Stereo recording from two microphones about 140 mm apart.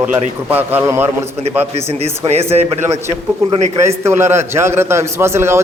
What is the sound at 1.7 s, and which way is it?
Speech, 45° right (ahead or behind).